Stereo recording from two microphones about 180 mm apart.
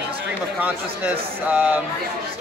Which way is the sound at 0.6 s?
10° right (ahead or behind).